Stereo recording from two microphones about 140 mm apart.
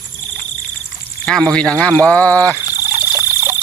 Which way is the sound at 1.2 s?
5° left (ahead or behind).